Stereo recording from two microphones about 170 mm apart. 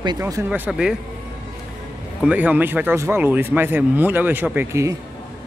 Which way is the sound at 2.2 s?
10° right (ahead or behind).